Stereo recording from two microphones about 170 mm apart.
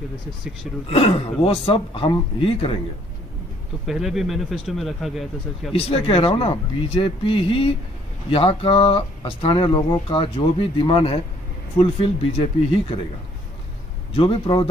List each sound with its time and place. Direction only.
0.8 s speech: 35° left (ahead or behind)
3.8 s speech: centre (ahead or behind)
5.7 s speech: 35° left (ahead or behind)
14.1 s speech: 30° left (ahead or behind)